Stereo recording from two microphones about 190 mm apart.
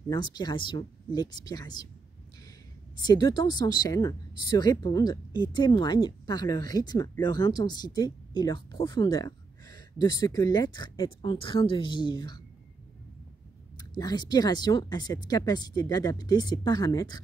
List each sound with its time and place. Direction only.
0.1 s speech: 25° left (ahead or behind)
3.0 s speech: 20° left (ahead or behind)
13.7 s speech: 20° left (ahead or behind)